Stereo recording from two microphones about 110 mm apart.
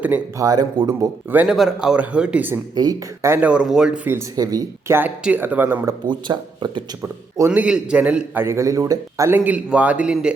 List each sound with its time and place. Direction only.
0.3 s speech: 35° right (ahead or behind)
1.5 s speech: 5° right (ahead or behind)
2.7 s speech: 35° right (ahead or behind)
3.4 s a man's voice: 10° right (ahead or behind)
6.1 s speech: 45° right (ahead or behind)
7.0 s a man's voice: 25° right (ahead or behind)
7.6 s a man's voice: 10° right (ahead or behind); by 9.4 s 30° right (ahead or behind)
9.4 s speech: 10° right (ahead or behind)